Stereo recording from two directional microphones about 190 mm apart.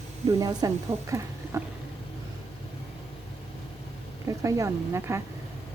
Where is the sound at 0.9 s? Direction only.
30° right (ahead or behind).